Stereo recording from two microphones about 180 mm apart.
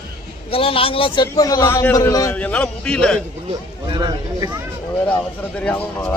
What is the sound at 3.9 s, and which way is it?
Speech, 25° right (ahead or behind).